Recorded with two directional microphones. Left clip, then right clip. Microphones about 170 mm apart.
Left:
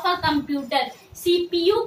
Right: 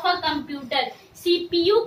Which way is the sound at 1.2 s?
20° right (ahead or behind).